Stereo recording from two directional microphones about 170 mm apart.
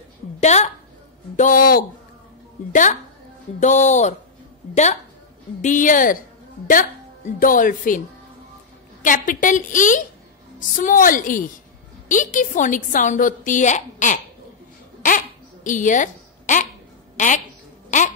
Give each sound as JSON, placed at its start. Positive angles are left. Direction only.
{"t": 0.4, "sound": "a woman's voice", "side_deg": 40}
{"t": 2.7, "sound": "a woman's voice", "side_deg": 45}
{"t": 5.6, "sound": "a woman's voice", "side_deg": 50}
{"t": 7.3, "sound": "a woman's voice", "side_deg": 55}
{"t": 9.0, "sound": "a woman's voice", "side_deg": 50}
{"t": 15.0, "sound": "a sound", "side_deg": 50}
{"t": 17.2, "sound": "a woman's voice", "side_deg": 45}